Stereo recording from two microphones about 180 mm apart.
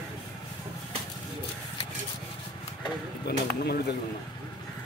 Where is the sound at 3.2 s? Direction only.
65° left (ahead or behind).